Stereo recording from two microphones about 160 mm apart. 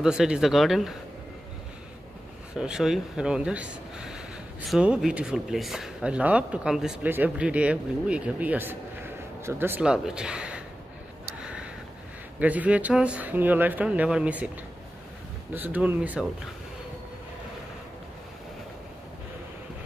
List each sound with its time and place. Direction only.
0.0 s speech: 5° right (ahead or behind)
2.5 s speech: 5° right (ahead or behind)
11.2 s a sound: 5° right (ahead or behind)
12.4 s speech: 10° right (ahead or behind)
15.5 s speech: 10° right (ahead or behind)